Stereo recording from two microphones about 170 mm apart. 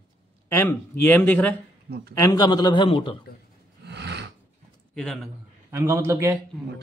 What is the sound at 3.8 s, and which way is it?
Snort, 85° right.